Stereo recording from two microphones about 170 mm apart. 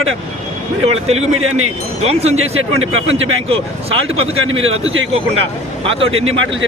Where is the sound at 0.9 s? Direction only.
40° right (ahead or behind).